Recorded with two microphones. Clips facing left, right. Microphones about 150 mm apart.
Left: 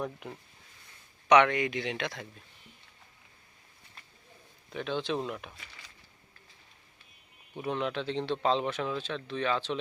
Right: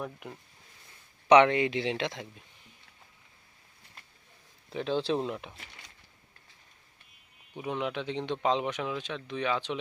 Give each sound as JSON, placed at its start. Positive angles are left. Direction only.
{"t": 0.0, "sound": "speech", "side_deg": -5}
{"t": 1.3, "sound": "speech", "side_deg": -30}
{"t": 4.7, "sound": "speech", "side_deg": -30}
{"t": 7.5, "sound": "a man's voice", "side_deg": -10}